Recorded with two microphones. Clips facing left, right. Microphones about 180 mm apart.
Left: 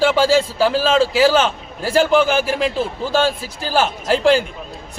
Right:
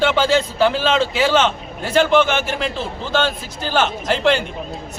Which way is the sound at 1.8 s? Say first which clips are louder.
Even; 35° left (ahead or behind).